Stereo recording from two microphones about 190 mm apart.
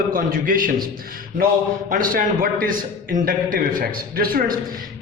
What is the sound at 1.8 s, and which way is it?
A man's voice, 45° right (ahead or behind).